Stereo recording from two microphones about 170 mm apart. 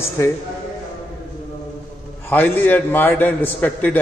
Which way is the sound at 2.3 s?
10° left (ahead or behind).